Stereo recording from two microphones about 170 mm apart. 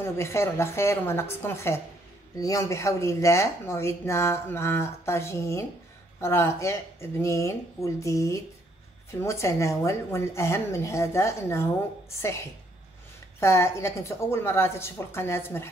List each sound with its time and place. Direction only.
0.0 s speech: 15° left (ahead or behind)
13.4 s speech: 15° left (ahead or behind)